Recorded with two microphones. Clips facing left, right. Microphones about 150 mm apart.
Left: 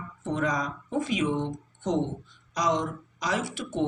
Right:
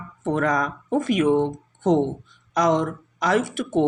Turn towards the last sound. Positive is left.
turn(degrees=-55)  # may be behind; listen again after turning